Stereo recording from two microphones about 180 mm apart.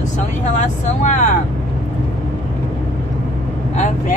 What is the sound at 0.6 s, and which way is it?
Speech, 45° left (ahead or behind).